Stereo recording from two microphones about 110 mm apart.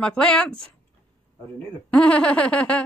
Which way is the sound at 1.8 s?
10° left (ahead or behind).